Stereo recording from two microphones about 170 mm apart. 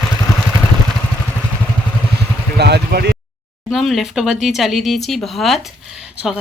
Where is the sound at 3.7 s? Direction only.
Centre (ahead or behind).